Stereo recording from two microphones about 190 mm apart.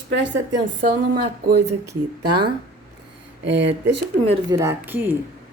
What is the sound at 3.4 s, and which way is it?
Speech, 70° right (ahead or behind).